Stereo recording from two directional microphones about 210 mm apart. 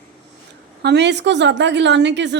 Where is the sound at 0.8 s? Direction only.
55° right (ahead or behind).